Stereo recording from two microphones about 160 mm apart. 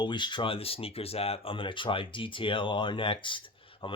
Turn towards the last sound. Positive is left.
turn(degrees=35)  # may be behind; listen again after turning